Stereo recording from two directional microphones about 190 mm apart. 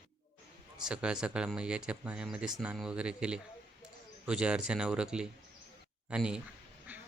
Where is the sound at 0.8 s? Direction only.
5° right (ahead or behind).